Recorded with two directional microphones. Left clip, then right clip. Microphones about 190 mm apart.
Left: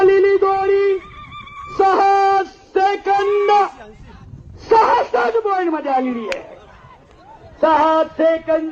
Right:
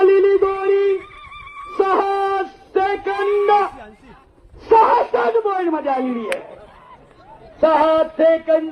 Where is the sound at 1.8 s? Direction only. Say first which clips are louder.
Left 4 dB; 15° left (ahead or behind).